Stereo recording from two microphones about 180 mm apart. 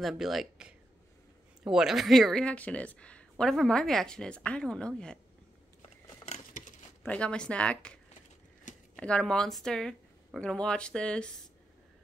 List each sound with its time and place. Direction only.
0.0 s speech: centre (ahead or behind)
5.8 s a sound: 40° left (ahead or behind)
7.0 s speech: 5° left (ahead or behind)